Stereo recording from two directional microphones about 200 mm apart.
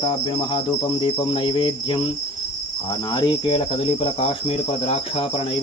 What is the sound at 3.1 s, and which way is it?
Cricket, 20° left (ahead or behind).